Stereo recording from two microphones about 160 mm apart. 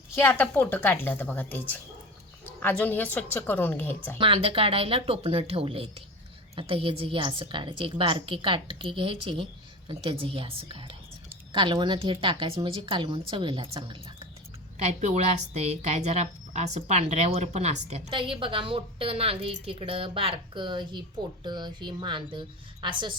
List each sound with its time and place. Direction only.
0.2 s speech: 15° left (ahead or behind)
4.2 s speech: 35° right (ahead or behind)
14.8 s a woman's voice: 45° right (ahead or behind)